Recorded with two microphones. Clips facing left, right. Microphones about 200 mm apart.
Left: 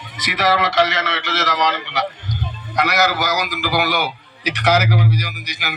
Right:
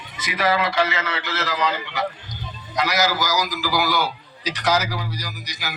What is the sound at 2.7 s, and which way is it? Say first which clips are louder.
A man's voice: left 3 dB; 65° left (ahead or behind).